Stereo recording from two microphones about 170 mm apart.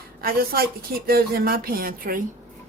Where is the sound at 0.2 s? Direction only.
60° right (ahead or behind).